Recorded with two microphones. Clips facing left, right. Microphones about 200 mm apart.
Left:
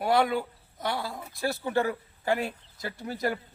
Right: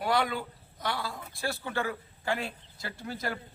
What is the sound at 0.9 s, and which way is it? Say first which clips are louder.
Speech: left 3 dB; 25° left (ahead or behind).